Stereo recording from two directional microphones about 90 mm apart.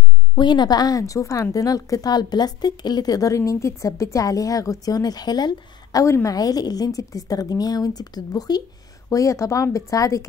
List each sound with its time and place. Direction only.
0.4 s a woman's voice: 50° left (ahead or behind)
9.1 s a woman's voice: 35° left (ahead or behind)